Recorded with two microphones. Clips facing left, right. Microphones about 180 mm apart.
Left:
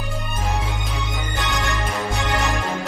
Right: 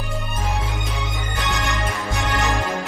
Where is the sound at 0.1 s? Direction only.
Centre (ahead or behind).